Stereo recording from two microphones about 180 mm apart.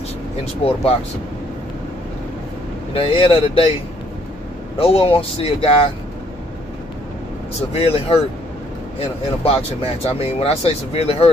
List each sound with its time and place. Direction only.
0.6 s speech: 30° left (ahead or behind)
2.9 s speech: 30° left (ahead or behind)
4.7 s speech: 30° left (ahead or behind)
7.7 s speech: 30° left (ahead or behind)
9.4 s speech: 35° left (ahead or behind)